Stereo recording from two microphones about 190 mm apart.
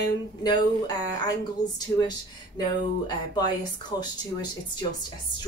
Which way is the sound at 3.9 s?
20° left (ahead or behind).